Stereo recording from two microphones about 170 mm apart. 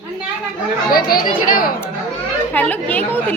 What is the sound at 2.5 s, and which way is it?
Speech, 10° left (ahead or behind).